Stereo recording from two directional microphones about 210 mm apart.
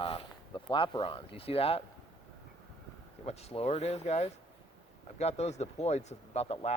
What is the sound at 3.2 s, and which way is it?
Speech, 30° left (ahead or behind).